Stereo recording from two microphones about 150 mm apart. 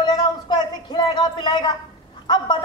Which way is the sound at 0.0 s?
25° left (ahead or behind).